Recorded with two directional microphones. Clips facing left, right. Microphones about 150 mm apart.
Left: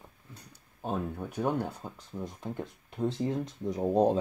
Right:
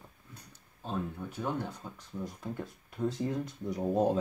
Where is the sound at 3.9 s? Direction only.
30° left (ahead or behind).